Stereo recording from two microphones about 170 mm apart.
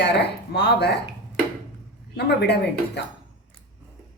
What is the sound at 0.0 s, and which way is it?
Speech, 80° left.